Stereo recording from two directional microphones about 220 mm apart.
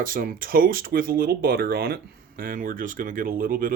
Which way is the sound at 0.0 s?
40° right (ahead or behind).